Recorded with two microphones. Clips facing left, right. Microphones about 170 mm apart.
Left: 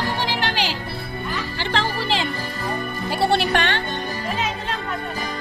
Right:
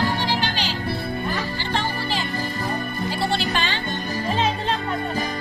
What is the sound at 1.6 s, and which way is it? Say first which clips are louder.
Music: left 2 dB; 90° left.